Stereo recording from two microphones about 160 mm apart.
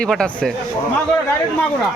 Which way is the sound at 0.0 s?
5° left (ahead or behind).